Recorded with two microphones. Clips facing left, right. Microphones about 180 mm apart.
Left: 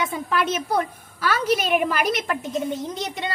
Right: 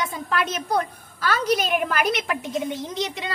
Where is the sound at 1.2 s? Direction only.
10° left (ahead or behind).